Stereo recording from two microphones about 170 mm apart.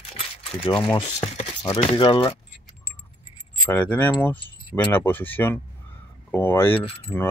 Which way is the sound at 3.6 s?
10° left (ahead or behind).